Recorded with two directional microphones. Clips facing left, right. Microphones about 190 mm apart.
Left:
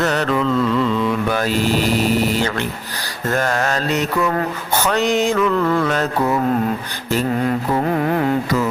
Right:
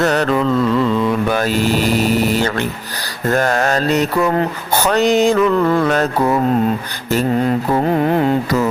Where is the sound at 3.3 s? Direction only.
40° right (ahead or behind).